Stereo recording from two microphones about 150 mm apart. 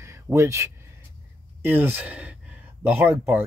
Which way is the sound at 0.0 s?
20° right (ahead or behind).